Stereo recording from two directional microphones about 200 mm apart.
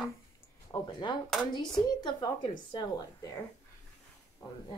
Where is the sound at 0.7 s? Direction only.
25° left (ahead or behind).